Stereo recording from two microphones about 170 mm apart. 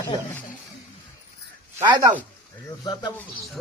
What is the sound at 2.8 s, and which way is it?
Speech, 25° left (ahead or behind).